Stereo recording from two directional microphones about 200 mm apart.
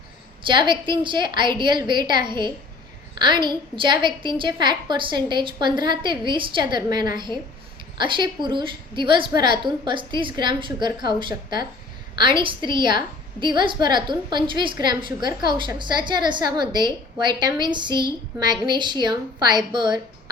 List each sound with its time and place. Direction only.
0.4 s a woman's voice: 25° right (ahead or behind)